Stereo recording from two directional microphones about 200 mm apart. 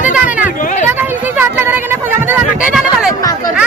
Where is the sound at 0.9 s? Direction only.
10° right (ahead or behind).